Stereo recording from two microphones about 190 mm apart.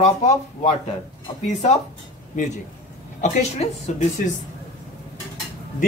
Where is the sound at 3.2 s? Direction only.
40° left (ahead or behind).